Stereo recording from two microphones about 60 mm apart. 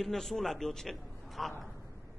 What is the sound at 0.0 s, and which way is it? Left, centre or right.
A man's voice, centre.